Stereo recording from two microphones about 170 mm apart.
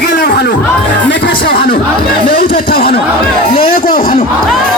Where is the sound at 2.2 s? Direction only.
55° left (ahead or behind).